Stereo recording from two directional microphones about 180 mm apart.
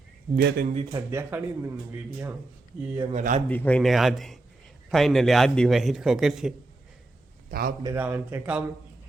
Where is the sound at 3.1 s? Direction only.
45° right (ahead or behind).